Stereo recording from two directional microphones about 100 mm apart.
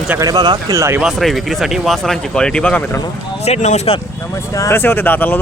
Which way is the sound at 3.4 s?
80° left.